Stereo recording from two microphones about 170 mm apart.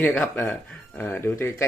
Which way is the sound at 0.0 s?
5° left (ahead or behind).